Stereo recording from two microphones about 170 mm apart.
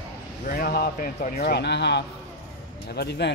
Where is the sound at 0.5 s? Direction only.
60° left (ahead or behind).